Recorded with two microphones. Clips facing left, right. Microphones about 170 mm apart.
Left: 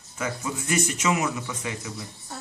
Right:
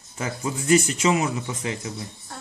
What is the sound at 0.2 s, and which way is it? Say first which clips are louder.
Speech: right 2 dB; 30° right (ahead or behind).